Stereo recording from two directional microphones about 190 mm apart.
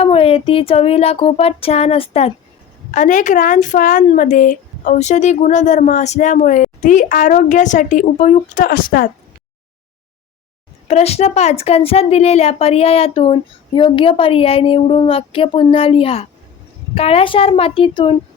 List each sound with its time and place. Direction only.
0.0 s a woman's voice: 30° left (ahead or behind); by 9.0 s 50° left (ahead or behind)
10.8 s a woman's voice: 35° left (ahead or behind)